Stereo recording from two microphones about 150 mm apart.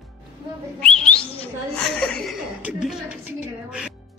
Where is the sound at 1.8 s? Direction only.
5° left (ahead or behind).